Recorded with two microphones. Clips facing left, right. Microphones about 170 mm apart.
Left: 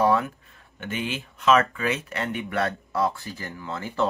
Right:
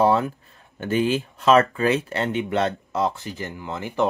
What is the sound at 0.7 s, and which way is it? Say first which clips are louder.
Speech: right 9 dB; 35° right (ahead or behind).